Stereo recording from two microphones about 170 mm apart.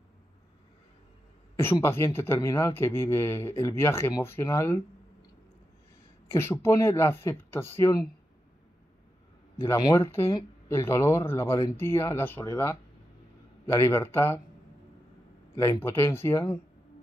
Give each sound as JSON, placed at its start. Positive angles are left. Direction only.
{"t": 1.6, "sound": "speech", "side_deg": 15}
{"t": 6.2, "sound": "speech", "side_deg": 15}
{"t": 9.6, "sound": "speech", "side_deg": 20}
{"t": 13.7, "sound": "speech", "side_deg": 15}
{"t": 15.5, "sound": "speech", "side_deg": 15}